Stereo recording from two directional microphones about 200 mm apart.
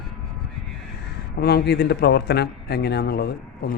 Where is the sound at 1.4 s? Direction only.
50° left (ahead or behind).